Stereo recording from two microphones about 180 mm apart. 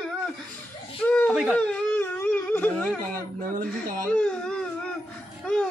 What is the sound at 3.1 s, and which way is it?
Speech, 50° right (ahead or behind).